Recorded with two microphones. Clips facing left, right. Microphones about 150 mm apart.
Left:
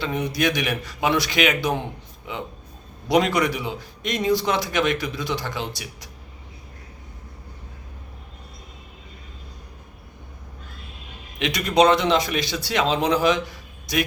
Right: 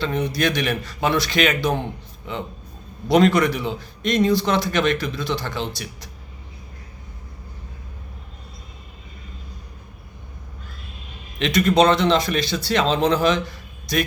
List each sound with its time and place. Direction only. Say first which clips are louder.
0.0 s a man's voice: right 1 dB; 15° left (ahead or behind)
11.3 s a man's voice: right 2 dB; 15° left (ahead or behind)